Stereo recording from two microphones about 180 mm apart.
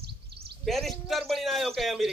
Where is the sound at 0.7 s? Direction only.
Centre (ahead or behind).